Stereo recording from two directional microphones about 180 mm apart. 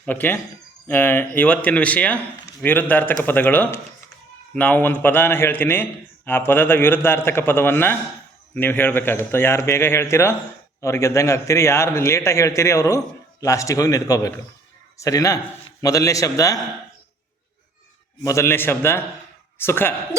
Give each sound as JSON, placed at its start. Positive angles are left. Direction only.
{"t": 0.0, "sound": "a man's voice", "side_deg": 10}
{"t": 18.2, "sound": "a man's voice", "side_deg": 15}